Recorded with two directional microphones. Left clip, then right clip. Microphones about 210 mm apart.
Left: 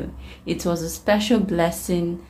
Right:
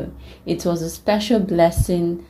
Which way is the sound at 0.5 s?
10° right (ahead or behind).